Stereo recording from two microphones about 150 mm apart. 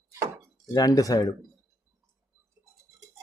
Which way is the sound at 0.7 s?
25° left (ahead or behind).